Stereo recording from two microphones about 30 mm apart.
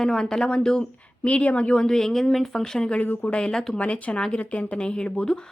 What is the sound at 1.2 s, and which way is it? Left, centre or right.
Speech, left.